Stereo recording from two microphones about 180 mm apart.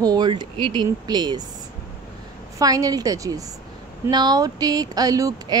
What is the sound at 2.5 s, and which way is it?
Speech, 20° right (ahead or behind).